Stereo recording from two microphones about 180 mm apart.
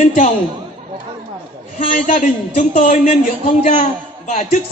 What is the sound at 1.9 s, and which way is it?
A man's voice, 45° left (ahead or behind).